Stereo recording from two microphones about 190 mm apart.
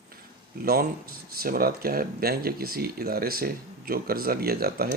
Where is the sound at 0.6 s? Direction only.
50° right (ahead or behind).